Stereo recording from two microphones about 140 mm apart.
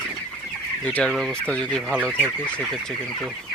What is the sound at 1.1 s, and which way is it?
Speech, centre (ahead or behind).